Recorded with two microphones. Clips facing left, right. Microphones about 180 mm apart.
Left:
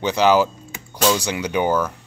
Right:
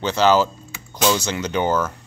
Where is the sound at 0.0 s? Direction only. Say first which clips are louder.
Left 1 dB; 15° left (ahead or behind).